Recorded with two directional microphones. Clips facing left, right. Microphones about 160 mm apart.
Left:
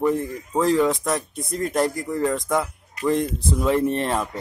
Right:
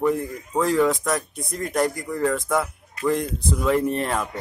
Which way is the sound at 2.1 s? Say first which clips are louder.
Even; 20° left (ahead or behind).